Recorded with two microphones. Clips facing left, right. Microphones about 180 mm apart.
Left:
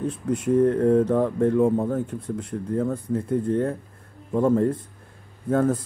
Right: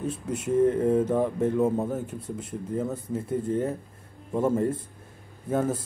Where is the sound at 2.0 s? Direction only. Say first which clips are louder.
Left 5 dB; 25° right (ahead or behind).